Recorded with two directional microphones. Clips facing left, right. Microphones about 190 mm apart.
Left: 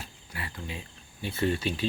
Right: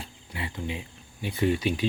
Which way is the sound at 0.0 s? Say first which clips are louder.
Right 4 dB; 20° right (ahead or behind).